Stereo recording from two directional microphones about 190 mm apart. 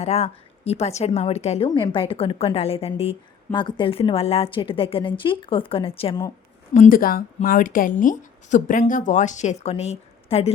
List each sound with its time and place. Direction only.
0.0 s a woman's voice: 35° left (ahead or behind)
6.7 s a woman's voice: 45° left (ahead or behind)